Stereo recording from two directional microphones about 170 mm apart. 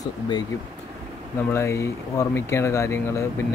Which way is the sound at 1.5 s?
15° left (ahead or behind).